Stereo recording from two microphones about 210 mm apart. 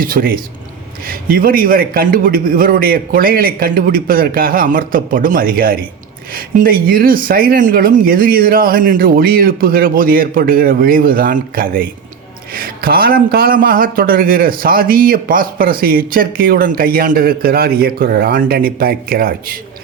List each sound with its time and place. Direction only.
0.0 s a man's voice: 45° right (ahead or behind)